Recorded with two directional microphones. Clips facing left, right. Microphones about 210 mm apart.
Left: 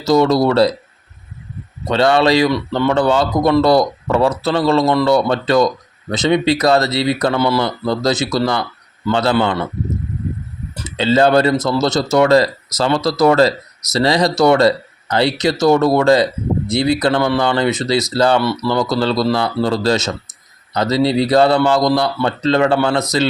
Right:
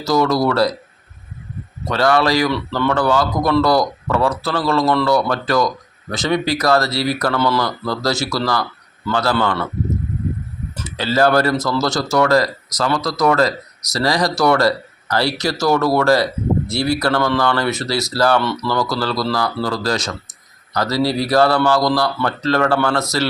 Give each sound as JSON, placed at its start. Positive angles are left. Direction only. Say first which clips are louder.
{"t": 0.0, "sound": "speech", "louder": "left 3 dB", "side_deg": 25}
{"t": 1.9, "sound": "speech", "louder": "left 3 dB", "side_deg": 25}
{"t": 10.8, "sound": "speech", "louder": "left 3 dB", "side_deg": 20}
{"t": 18.8, "sound": "speech", "louder": "left 6 dB", "side_deg": 20}